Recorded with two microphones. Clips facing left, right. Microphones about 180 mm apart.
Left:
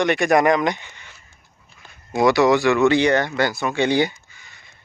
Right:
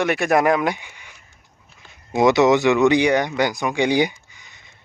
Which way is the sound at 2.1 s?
20° right (ahead or behind).